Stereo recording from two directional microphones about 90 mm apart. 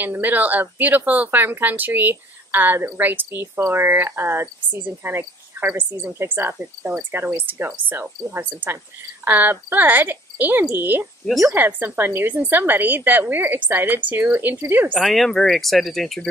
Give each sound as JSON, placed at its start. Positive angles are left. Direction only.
{"t": 0.0, "sound": "speech", "side_deg": -20}
{"t": 15.0, "sound": "speech", "side_deg": 5}